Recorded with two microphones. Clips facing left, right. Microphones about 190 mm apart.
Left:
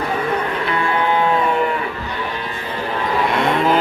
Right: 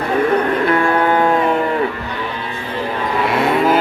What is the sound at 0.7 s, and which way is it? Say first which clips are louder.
Music: right 2 dB; 45° right (ahead or behind).